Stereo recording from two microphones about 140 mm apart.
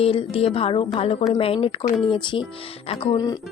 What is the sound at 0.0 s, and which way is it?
A woman's voice, 45° left (ahead or behind).